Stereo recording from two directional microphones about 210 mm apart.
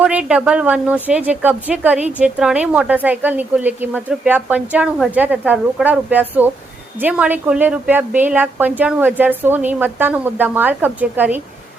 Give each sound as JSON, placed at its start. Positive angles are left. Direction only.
{"t": 0.0, "sound": "speech", "side_deg": -5}